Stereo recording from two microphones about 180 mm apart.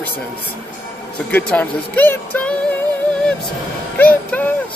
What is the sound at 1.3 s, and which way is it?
Speech, 10° left (ahead or behind).